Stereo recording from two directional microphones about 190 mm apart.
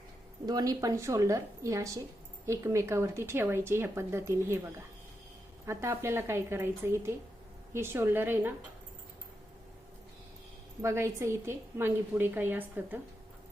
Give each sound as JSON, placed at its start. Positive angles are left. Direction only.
{"t": 0.4, "sound": "speech", "side_deg": -20}
{"t": 10.8, "sound": "speech", "side_deg": -15}